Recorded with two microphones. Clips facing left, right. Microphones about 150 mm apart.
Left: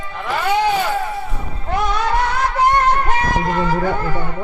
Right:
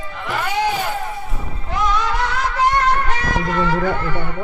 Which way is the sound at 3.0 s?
45° left (ahead or behind).